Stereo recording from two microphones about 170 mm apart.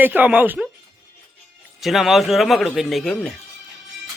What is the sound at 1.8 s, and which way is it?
Speech, centre (ahead or behind).